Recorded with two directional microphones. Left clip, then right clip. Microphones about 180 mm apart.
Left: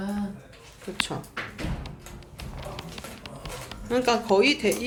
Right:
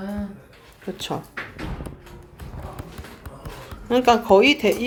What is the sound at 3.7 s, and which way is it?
Speech, 25° right (ahead or behind).